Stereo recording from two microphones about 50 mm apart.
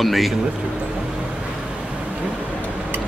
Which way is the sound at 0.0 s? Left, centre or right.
Centre.